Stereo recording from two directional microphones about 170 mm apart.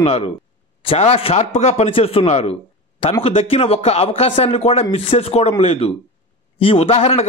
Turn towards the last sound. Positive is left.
turn(degrees=35)  # may be behind; listen again after turning